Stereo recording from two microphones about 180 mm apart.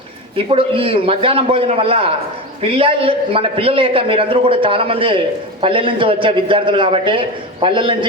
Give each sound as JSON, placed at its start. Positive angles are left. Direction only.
{"t": 0.3, "sound": "a man's voice", "side_deg": -30}